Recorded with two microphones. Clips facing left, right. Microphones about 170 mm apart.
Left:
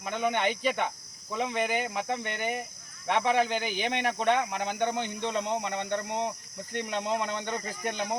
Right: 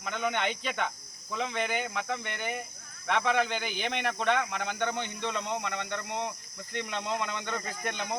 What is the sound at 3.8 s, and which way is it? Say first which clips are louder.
Speech: left 1 dB; 40° left (ahead or behind).